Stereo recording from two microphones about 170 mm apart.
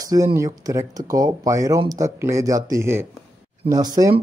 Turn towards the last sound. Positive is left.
turn(degrees=-20)  # may be behind; listen again after turning